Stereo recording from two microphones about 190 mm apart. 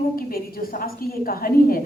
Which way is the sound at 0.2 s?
50° left (ahead or behind).